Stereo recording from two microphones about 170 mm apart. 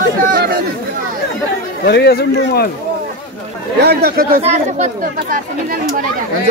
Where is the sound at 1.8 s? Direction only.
70° left (ahead or behind).